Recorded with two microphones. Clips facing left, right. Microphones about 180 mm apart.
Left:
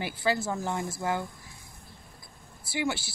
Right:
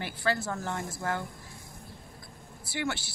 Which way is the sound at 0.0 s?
10° left (ahead or behind).